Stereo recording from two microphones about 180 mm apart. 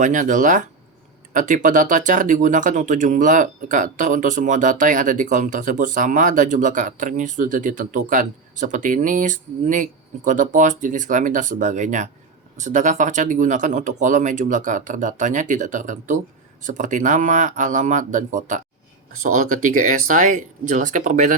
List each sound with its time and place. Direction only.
0.0 s speech: 45° right (ahead or behind)